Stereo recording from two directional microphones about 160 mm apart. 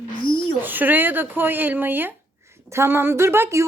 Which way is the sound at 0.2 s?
30° left (ahead or behind).